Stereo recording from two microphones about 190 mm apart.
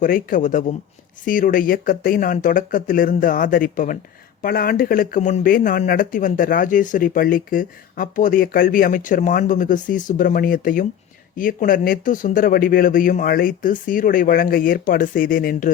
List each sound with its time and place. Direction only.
0.0 s speech: 45° left (ahead or behind)